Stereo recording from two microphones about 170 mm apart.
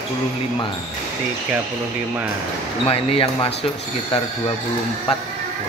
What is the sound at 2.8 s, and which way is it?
Speech, 35° left (ahead or behind).